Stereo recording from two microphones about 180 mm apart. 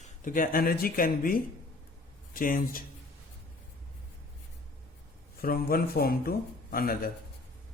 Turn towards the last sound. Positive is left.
turn(degrees=55)  # may be behind; listen again after turning